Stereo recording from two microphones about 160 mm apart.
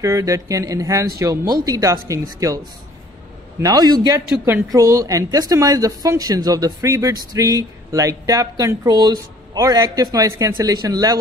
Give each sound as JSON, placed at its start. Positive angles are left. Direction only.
{"t": 0.0, "sound": "a woman's voice", "side_deg": -20}
{"t": 3.6, "sound": "a woman's voice", "side_deg": -25}